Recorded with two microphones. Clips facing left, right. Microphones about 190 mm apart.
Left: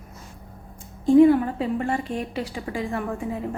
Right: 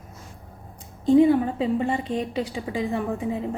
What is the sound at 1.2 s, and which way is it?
A woman's voice, 20° right (ahead or behind).